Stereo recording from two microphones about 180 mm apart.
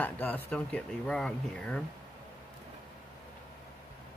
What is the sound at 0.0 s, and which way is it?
Speech, 10° left (ahead or behind).